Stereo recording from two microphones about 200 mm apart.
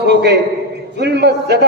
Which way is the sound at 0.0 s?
55° right (ahead or behind).